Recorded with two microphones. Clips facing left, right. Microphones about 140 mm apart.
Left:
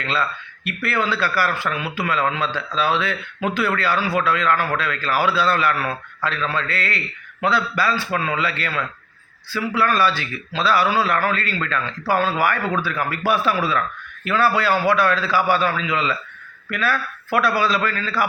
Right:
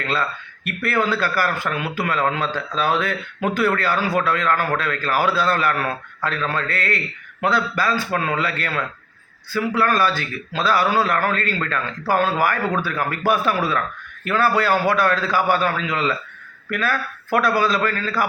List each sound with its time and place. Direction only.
0.0 s a man's voice: 45° right (ahead or behind)